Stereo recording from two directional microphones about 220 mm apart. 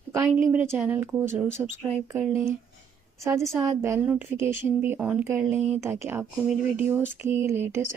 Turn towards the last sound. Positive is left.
turn(degrees=-10)  # may be behind; listen again after turning